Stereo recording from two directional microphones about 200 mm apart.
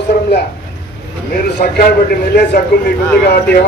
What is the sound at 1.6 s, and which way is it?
Speech, 40° left (ahead or behind).